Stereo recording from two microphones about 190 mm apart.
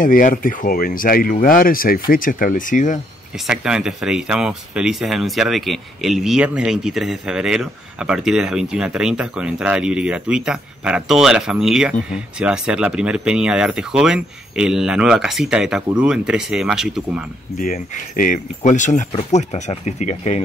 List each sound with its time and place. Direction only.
0.0 s speech: 45° left (ahead or behind)
3.3 s speech: 5° right (ahead or behind)
17.6 s speech: 45° left (ahead or behind)